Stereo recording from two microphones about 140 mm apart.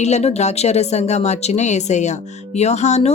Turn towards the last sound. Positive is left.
turn(degrees=55)  # may be behind; listen again after turning